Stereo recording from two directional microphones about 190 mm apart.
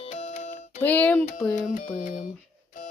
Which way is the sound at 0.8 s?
10° left (ahead or behind).